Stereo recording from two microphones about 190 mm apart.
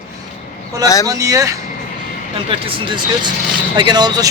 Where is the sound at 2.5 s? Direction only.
30° right (ahead or behind).